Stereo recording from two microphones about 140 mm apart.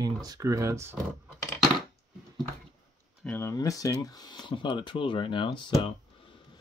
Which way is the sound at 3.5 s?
25° left (ahead or behind).